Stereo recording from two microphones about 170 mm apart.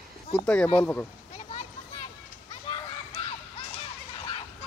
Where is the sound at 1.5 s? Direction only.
40° left (ahead or behind).